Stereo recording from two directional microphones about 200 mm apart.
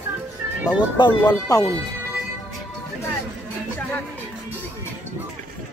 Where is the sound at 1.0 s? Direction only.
25° left (ahead or behind).